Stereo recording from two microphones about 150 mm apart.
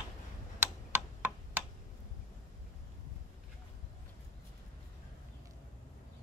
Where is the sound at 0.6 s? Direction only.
15° right (ahead or behind).